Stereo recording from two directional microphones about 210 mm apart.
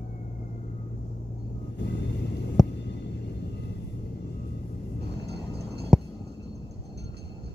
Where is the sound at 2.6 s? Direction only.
Centre (ahead or behind).